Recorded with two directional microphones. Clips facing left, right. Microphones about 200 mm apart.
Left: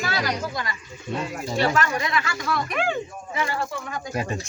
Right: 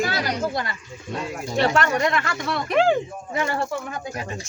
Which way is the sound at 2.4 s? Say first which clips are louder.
Right 9 dB; 30° right (ahead or behind).